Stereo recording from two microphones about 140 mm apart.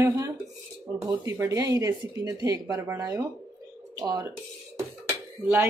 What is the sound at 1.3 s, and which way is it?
Speech, 20° right (ahead or behind).